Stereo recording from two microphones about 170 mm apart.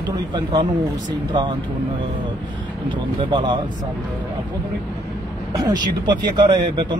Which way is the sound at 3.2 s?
30° right (ahead or behind).